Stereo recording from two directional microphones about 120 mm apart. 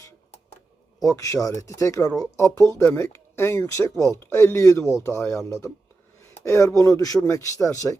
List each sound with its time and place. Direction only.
1.1 s speech: 25° left (ahead or behind)